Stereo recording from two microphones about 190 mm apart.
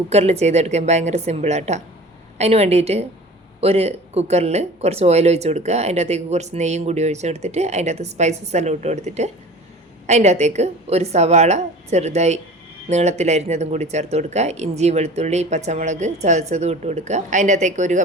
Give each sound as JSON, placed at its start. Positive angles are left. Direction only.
{"t": 0.1, "sound": "speech", "side_deg": -35}